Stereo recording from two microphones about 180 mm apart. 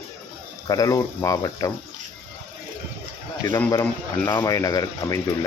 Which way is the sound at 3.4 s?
15° left (ahead or behind).